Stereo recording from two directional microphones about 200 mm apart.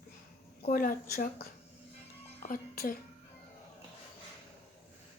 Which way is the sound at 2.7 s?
50° left (ahead or behind).